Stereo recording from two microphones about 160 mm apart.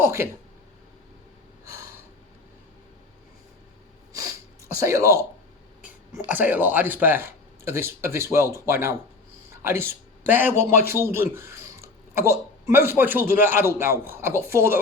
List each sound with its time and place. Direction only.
0.0 s speech: 15° right (ahead or behind)
1.6 s gasp: 20° right (ahead or behind)
4.1 s snort: 20° right (ahead or behind)
5.8 s a man's voice: 10° right (ahead or behind)